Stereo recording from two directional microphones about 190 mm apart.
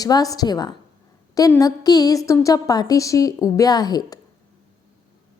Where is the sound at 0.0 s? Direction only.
20° left (ahead or behind).